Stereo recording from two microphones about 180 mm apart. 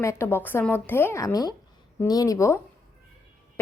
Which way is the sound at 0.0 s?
15° left (ahead or behind).